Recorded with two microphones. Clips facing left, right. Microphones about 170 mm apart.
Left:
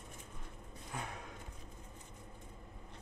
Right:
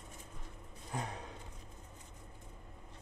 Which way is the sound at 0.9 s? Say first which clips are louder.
Right 4 dB; 35° right (ahead or behind).